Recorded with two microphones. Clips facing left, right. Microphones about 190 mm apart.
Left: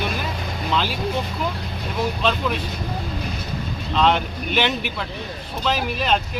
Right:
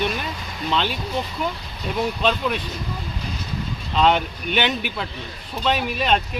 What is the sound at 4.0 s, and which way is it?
Speech, centre (ahead or behind).